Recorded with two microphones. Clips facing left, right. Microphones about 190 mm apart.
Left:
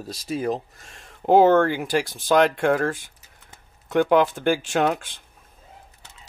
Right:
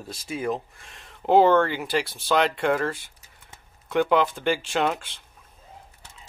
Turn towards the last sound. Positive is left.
turn(degrees=50)  # may be behind; listen again after turning